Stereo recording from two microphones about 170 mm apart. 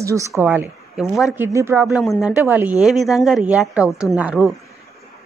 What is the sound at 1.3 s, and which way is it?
Speech, 15° right (ahead or behind).